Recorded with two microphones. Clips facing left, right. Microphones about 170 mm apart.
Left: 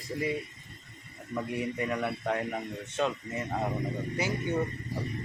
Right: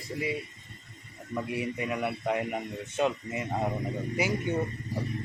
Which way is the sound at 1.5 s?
5° right (ahead or behind).